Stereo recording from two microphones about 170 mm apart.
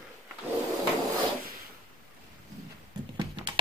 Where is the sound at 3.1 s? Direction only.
30° right (ahead or behind).